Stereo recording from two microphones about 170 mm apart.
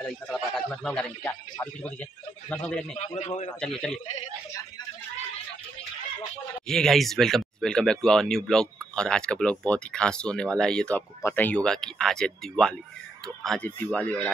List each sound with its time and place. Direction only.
0.0 s a man's voice: centre (ahead or behind)
3.2 s a man's voice: 40° left (ahead or behind)
3.6 s speech: 5° left (ahead or behind)
6.7 s a man's voice: centre (ahead or behind)